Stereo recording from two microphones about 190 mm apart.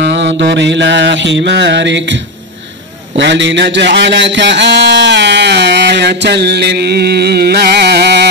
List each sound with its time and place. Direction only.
0.0 s mantra: 70° right (ahead or behind)
3.2 s a man's voice: 70° right (ahead or behind)